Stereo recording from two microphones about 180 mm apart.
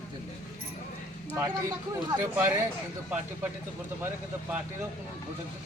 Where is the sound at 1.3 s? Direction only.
20° right (ahead or behind).